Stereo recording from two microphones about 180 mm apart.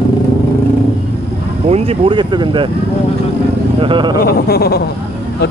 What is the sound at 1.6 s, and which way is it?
Speech, 30° right (ahead or behind).